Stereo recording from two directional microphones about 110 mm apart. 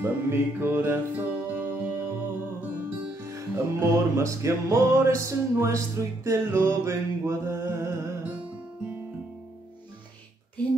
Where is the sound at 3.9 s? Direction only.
25° right (ahead or behind).